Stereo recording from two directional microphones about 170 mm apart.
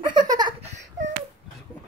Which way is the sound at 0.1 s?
25° right (ahead or behind).